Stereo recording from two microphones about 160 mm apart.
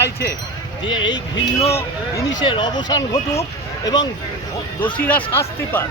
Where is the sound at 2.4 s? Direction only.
30° left (ahead or behind).